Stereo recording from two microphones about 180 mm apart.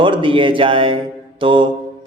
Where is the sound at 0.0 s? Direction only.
30° right (ahead or behind).